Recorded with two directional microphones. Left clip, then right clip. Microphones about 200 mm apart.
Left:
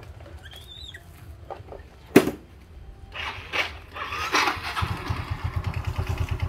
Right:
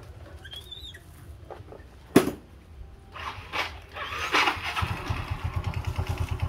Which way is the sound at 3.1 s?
60° left (ahead or behind).